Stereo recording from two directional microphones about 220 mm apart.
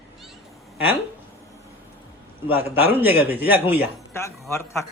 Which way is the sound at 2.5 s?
10° right (ahead or behind).